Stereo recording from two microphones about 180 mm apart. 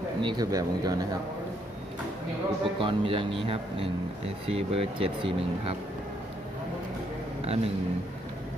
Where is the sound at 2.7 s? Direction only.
30° right (ahead or behind).